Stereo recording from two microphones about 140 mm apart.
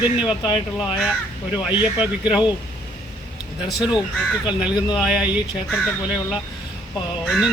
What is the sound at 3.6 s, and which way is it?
Speech, 5° right (ahead or behind).